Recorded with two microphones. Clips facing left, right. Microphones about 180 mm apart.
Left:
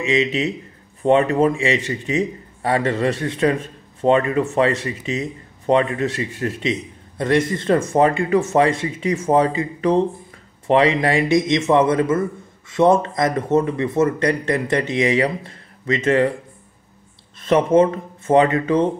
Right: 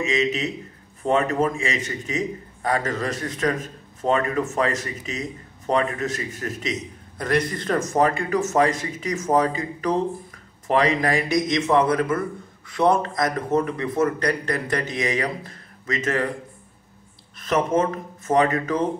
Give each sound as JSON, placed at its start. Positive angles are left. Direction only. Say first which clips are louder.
{"t": 0.0, "sound": "a man's voice", "louder": "left 4 dB", "side_deg": 35}
{"t": 17.4, "sound": "speech", "louder": "left 6 dB", "side_deg": 30}